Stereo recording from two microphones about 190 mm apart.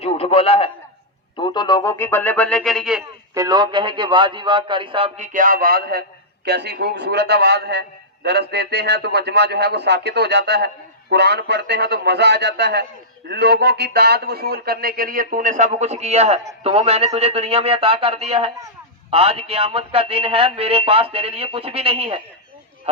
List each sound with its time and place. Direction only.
0.0 s a man's voice: 30° left (ahead or behind)
1.4 s music: 25° left (ahead or behind); by 3.0 s centre (ahead or behind)
3.3 s a man's voice: 20° right (ahead or behind)